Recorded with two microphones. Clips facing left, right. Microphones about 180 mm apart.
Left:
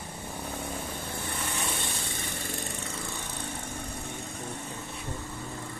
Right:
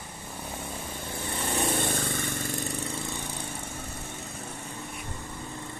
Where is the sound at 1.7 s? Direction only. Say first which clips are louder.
Right 7 dB; 50° right (ahead or behind).